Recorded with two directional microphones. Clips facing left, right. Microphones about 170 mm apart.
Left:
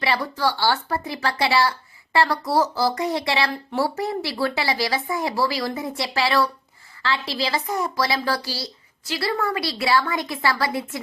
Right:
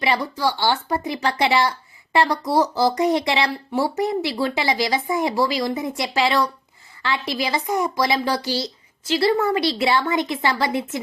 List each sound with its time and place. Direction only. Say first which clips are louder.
0.0 s a woman's voice: right 1 dB; 15° right (ahead or behind)